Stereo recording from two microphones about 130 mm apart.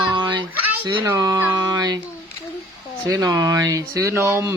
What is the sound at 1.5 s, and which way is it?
Speech, 30° right (ahead or behind).